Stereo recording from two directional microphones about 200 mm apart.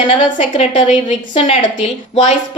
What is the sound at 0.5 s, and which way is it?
A woman's voice, 25° left (ahead or behind).